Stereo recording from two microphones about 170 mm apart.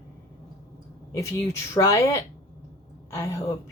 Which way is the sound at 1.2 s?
15° left (ahead or behind).